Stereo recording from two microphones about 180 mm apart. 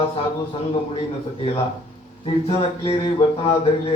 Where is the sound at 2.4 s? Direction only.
35° left (ahead or behind).